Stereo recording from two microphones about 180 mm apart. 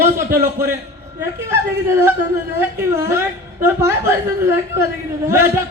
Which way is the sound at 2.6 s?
15° right (ahead or behind).